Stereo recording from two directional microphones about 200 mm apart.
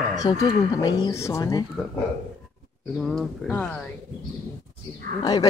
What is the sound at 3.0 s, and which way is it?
Speech, centre (ahead or behind).